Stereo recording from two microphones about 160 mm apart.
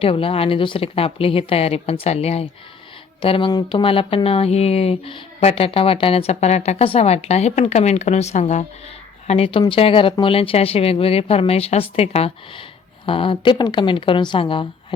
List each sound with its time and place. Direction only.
0.0 s speech: 35° left (ahead or behind)